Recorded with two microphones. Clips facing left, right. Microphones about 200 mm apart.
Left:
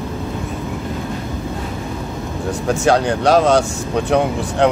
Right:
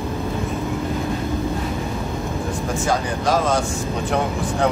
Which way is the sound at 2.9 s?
70° left (ahead or behind).